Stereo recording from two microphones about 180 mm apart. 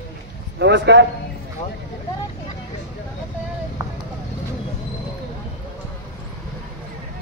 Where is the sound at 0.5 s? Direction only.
75° right (ahead or behind).